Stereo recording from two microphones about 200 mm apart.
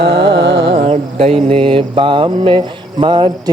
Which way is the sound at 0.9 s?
30° right (ahead or behind).